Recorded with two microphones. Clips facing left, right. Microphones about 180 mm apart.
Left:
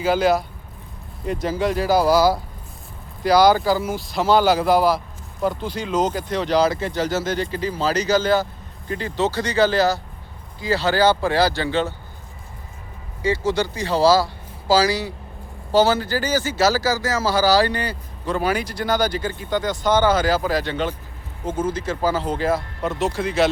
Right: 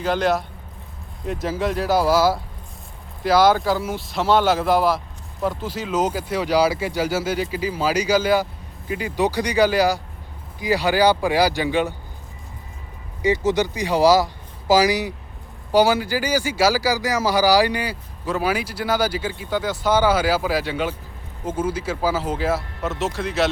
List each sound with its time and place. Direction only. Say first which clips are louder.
0.0 s speech: left 2 dB; 5° left (ahead or behind); by 11.9 s 15° right (ahead or behind)
13.2 s speech: right 2 dB; 20° right (ahead or behind); by 23.5 s centre (ahead or behind)